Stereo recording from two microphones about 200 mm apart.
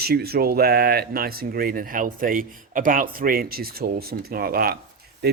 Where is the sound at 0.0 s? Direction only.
50° right (ahead or behind).